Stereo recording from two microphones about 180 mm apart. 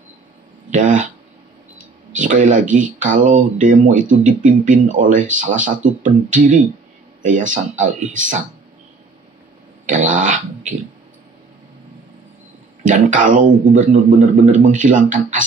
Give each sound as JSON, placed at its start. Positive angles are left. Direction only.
{"t": 0.7, "sound": "speech", "side_deg": -45}
{"t": 2.1, "sound": "speech", "side_deg": -45}
{"t": 9.8, "sound": "speech", "side_deg": -45}
{"t": 12.8, "sound": "speech", "side_deg": -45}